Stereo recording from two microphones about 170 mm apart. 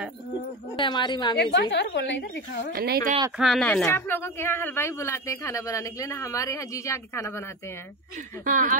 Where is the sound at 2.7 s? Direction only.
60° right (ahead or behind).